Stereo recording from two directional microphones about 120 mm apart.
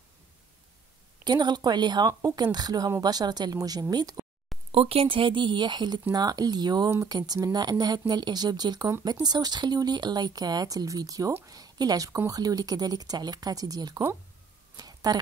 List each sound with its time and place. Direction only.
1.2 s speech: 40° right (ahead or behind)
4.7 s a woman's voice: 50° right (ahead or behind); by 14.0 s 30° right (ahead or behind)
14.8 s a sound: 35° right (ahead or behind)